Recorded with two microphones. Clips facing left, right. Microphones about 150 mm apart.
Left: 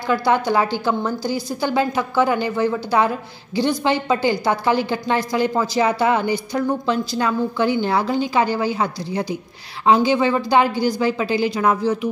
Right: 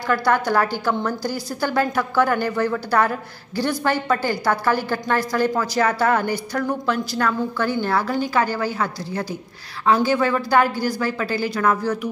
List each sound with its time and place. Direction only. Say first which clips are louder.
0.0 s a woman's voice: left 1 dB; 15° left (ahead or behind)